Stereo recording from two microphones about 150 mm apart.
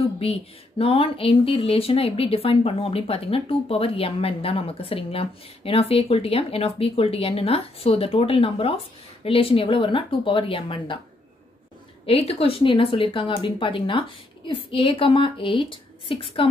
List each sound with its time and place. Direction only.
0.2 s speech: 40° left (ahead or behind)
12.1 s speech: 40° left (ahead or behind)